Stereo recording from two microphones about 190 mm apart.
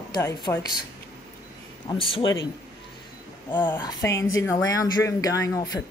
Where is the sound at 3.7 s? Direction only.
20° left (ahead or behind).